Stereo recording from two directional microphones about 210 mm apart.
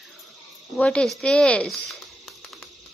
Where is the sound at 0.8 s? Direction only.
5° left (ahead or behind).